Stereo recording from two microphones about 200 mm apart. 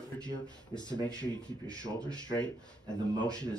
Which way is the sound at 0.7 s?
20° left (ahead or behind).